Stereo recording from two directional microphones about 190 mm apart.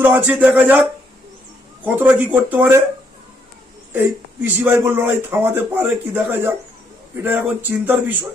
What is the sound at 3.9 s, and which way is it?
A man's voice, 10° right (ahead or behind).